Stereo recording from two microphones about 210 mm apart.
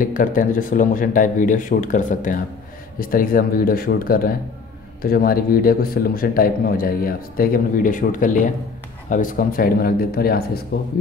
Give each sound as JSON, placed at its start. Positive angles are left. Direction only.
{"t": 0.0, "sound": "a man's voice", "side_deg": 40}